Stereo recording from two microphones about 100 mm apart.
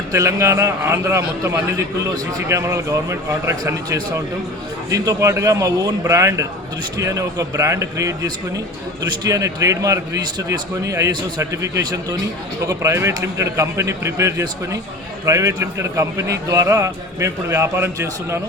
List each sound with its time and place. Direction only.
0.1 s a man's voice: 30° right (ahead or behind)
10.9 s a man's voice: 30° right (ahead or behind)